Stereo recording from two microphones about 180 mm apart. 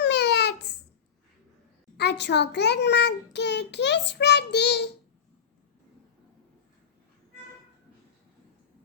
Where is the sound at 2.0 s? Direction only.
70° left (ahead or behind).